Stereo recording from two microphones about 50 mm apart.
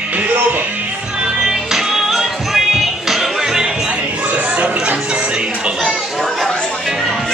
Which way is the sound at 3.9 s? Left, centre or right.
Right.